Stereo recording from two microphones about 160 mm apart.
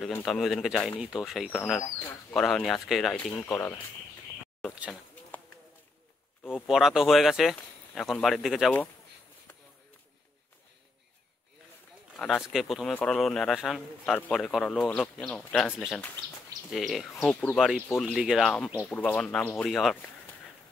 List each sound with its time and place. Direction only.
0.1 s speech: 5° left (ahead or behind)
3.4 s speech: 20° left (ahead or behind)
6.7 s speech: 5° right (ahead or behind)
12.2 s speech: centre (ahead or behind)